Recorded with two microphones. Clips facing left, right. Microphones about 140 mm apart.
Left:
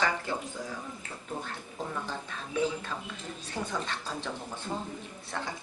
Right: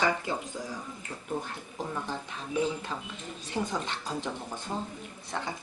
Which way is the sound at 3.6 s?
15° right (ahead or behind).